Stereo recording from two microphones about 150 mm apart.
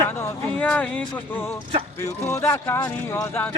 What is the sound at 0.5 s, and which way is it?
A man's voice, 10° left (ahead or behind).